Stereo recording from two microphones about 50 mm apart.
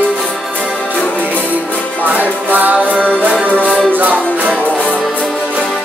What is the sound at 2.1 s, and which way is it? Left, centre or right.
Music, right.